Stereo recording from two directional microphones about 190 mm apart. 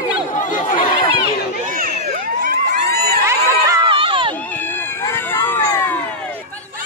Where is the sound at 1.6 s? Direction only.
45° right (ahead or behind).